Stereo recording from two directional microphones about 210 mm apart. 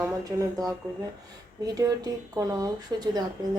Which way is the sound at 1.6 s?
15° right (ahead or behind).